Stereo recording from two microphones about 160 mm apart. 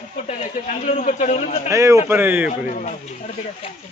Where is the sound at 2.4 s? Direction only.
50° left (ahead or behind).